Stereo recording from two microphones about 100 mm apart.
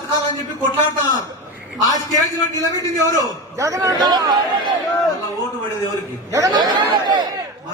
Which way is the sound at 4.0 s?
45° right (ahead or behind).